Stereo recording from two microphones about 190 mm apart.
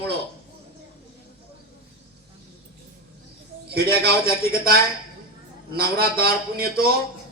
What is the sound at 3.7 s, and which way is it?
A man's voice, 55° right (ahead or behind).